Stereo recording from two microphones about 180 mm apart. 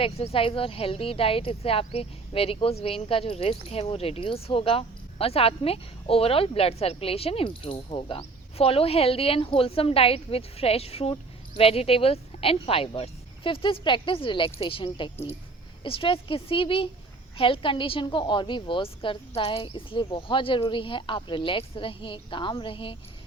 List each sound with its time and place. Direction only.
0.0 s a woman's voice: 30° left (ahead or behind)